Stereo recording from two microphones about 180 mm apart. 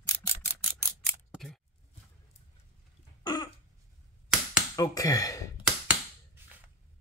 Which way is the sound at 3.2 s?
25° left (ahead or behind).